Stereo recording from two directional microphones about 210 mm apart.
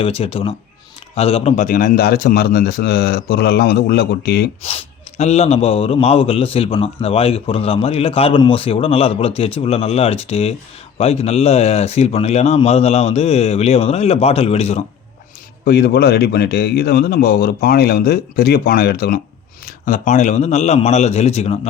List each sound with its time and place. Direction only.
0.0 s a man's voice: 25° left (ahead or behind); by 4.4 s 50° left (ahead or behind)
5.1 s a man's voice: 30° left (ahead or behind)
15.6 s a man's voice: 50° left (ahead or behind); by 21.7 s 30° left (ahead or behind)